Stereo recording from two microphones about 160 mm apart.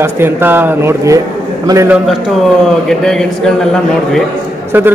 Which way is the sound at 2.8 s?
5° left (ahead or behind).